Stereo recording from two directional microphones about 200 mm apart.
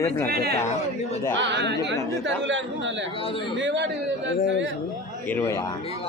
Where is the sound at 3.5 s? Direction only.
65° right (ahead or behind).